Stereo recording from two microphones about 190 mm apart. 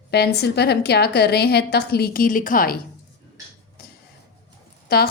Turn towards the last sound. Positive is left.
turn(degrees=55)  # may be behind; listen again after turning